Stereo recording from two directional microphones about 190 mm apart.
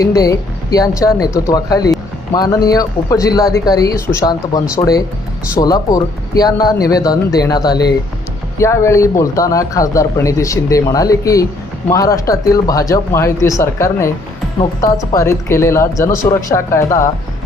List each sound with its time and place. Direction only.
0.0 s a man's voice: 15° left (ahead or behind)
15.1 s a man's voice: 15° left (ahead or behind)